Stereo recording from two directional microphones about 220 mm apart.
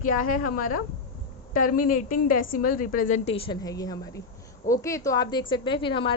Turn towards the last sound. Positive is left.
turn(degrees=20)  # may be behind; listen again after turning